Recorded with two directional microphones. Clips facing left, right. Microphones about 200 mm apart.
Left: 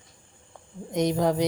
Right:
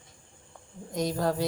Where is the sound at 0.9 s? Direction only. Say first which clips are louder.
Left 5 dB; 20° left (ahead or behind).